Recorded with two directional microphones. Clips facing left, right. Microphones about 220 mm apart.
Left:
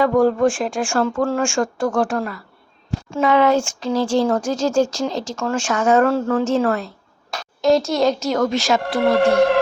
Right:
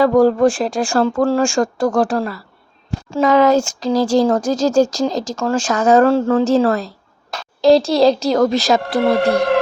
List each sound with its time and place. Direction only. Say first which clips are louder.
0.0 s speech: right 3 dB; 35° right (ahead or behind)